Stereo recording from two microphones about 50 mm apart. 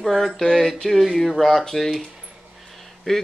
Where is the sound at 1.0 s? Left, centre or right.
Centre.